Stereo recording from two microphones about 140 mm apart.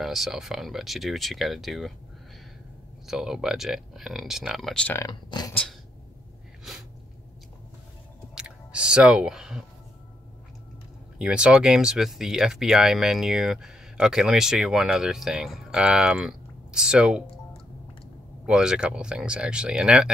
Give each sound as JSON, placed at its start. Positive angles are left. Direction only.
{"t": 0.0, "sound": "speech", "side_deg": 0}
{"t": 3.1, "sound": "speech", "side_deg": -5}
{"t": 4.9, "sound": "speech", "side_deg": 25}
{"t": 5.5, "sound": "a sound", "side_deg": 10}
{"t": 8.4, "sound": "chewing", "side_deg": -5}
{"t": 11.1, "sound": "speech", "side_deg": -5}
{"t": 18.4, "sound": "speech", "side_deg": -5}